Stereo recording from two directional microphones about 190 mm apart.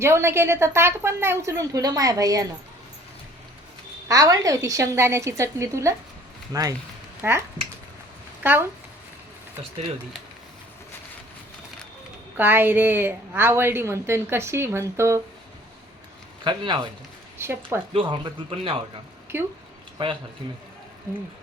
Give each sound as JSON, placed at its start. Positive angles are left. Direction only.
{"t": 0.0, "sound": "a woman's voice", "side_deg": -15}
{"t": 4.1, "sound": "a woman's voice", "side_deg": -20}
{"t": 8.4, "sound": "a woman's voice", "side_deg": -10}
{"t": 12.4, "sound": "a woman's voice", "side_deg": -10}
{"t": 16.4, "sound": "speech", "side_deg": -25}
{"t": 17.3, "sound": "speech", "side_deg": -10}
{"t": 17.9, "sound": "speech", "side_deg": -25}
{"t": 19.3, "sound": "a woman's voice", "side_deg": -10}